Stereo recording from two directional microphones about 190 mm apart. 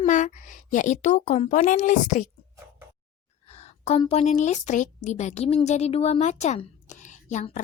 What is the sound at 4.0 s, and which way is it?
Speech, 30° left (ahead or behind).